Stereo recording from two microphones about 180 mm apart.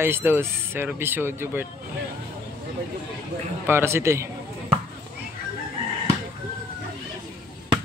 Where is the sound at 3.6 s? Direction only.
15° right (ahead or behind).